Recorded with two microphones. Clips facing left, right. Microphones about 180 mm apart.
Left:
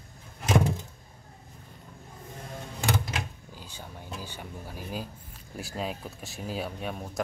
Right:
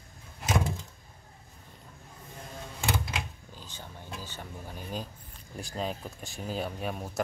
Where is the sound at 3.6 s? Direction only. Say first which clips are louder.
Left 2 dB; 10° left (ahead or behind).